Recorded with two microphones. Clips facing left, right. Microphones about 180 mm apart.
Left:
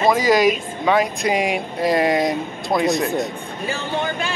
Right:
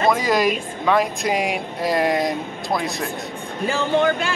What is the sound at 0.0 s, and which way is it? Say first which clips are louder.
Speech: left 3 dB; centre (ahead or behind).